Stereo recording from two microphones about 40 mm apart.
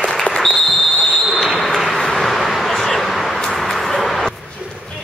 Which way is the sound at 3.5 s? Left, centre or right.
Centre.